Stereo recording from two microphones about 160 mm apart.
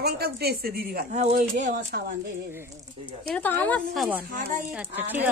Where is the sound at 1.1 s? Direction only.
45° right (ahead or behind).